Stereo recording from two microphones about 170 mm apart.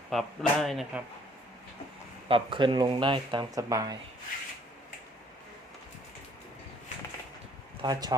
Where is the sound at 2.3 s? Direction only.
30° right (ahead or behind).